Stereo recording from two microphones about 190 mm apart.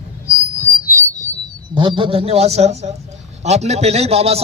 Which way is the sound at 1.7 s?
25° right (ahead or behind).